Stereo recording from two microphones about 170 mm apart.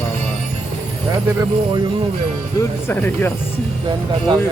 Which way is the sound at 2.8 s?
15° left (ahead or behind).